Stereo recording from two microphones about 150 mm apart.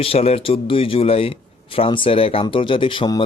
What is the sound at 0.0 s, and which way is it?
Speech, 40° left (ahead or behind).